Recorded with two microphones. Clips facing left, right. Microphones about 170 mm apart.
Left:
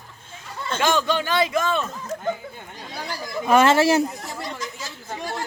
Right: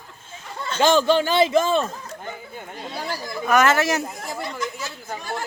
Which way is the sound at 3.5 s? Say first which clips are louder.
Left 3 dB; 30° left (ahead or behind).